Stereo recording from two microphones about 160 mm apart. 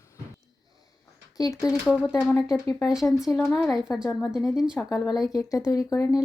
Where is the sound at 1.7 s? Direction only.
5° right (ahead or behind).